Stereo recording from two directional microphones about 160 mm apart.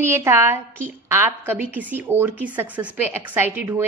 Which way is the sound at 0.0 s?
15° right (ahead or behind).